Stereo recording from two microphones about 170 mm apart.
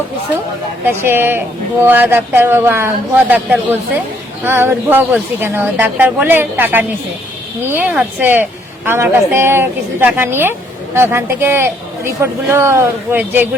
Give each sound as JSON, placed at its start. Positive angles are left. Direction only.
{"t": 0.9, "sound": "a woman's voice", "side_deg": -15}